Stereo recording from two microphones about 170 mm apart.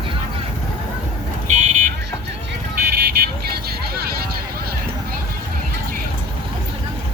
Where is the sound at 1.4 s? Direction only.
45° right (ahead or behind).